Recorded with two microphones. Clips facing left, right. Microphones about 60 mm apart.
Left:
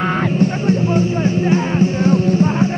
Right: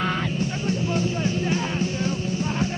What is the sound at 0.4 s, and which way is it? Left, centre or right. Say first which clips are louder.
Music: left 10 dB; left.